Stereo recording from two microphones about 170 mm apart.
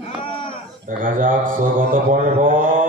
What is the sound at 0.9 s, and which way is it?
A man's voice, 50° right (ahead or behind).